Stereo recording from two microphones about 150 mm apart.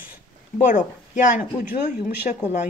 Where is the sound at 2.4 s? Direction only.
50° left (ahead or behind).